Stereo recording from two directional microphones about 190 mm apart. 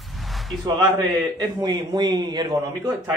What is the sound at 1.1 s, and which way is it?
A man's voice, 20° right (ahead or behind).